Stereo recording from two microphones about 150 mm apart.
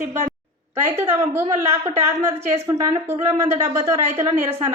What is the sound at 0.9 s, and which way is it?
A woman's voice, 15° right (ahead or behind).